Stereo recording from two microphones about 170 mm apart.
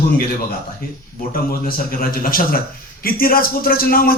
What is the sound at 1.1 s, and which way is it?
A man's voice, 60° left (ahead or behind).